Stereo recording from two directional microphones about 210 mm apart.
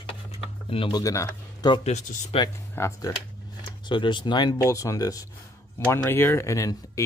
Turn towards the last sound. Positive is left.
turn(degrees=15)  # may be behind; listen again after turning